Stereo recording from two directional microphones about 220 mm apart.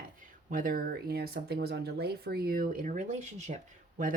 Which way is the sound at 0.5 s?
40° right (ahead or behind).